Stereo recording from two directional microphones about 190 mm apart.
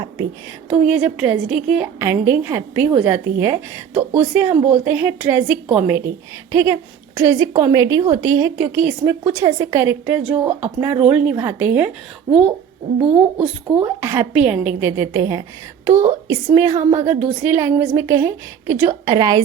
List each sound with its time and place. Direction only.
0.7 s a woman's voice: 5° right (ahead or behind)
13.0 s speech: 30° right (ahead or behind)
13.4 s a woman's voice: 5° right (ahead or behind); by 19.4 s 20° right (ahead or behind)